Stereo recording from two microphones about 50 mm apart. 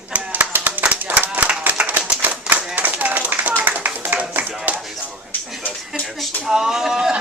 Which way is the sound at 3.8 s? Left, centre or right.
Right.